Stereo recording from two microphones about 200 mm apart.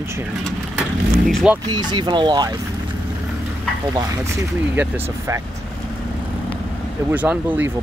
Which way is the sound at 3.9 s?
20° right (ahead or behind).